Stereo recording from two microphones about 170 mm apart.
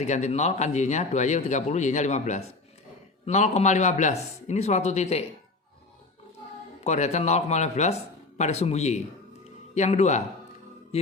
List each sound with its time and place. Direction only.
0.0 s speech: 40° left (ahead or behind)
6.8 s speech: 40° left (ahead or behind)
10.9 s music: 35° left (ahead or behind)